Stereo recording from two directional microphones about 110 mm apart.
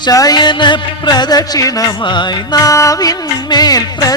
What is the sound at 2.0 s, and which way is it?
Music, 45° left (ahead or behind).